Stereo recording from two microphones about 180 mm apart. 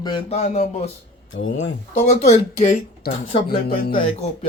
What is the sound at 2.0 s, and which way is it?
Speech, 45° left (ahead or behind).